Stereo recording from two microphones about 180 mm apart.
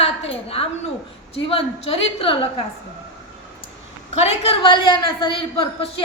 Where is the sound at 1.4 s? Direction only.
30° left (ahead or behind).